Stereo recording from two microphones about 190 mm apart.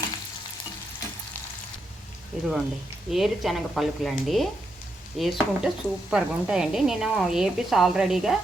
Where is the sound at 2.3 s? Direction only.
5° right (ahead or behind).